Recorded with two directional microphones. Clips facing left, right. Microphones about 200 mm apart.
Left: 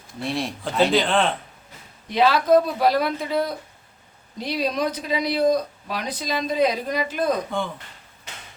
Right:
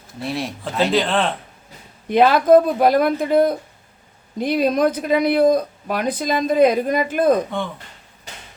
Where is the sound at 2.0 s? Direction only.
50° right (ahead or behind).